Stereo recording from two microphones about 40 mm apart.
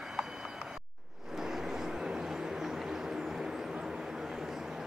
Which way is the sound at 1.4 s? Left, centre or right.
Centre.